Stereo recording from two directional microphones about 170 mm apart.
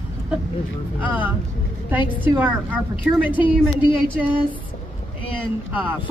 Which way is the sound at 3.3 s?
30° left (ahead or behind).